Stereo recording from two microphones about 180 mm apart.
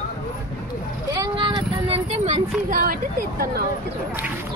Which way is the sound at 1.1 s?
25° right (ahead or behind).